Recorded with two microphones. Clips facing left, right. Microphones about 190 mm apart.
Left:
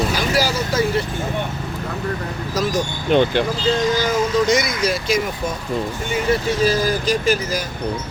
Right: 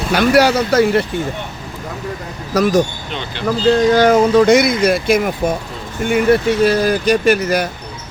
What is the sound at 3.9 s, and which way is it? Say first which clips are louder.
Speech: right 8 dB; 60° right (ahead or behind).